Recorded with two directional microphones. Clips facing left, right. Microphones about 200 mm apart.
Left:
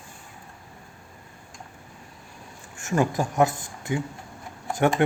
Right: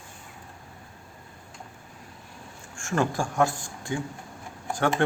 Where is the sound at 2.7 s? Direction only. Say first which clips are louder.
Left 3 dB; 20° left (ahead or behind).